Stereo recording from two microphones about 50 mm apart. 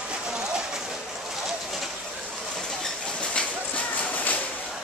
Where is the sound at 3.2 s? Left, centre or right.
Left.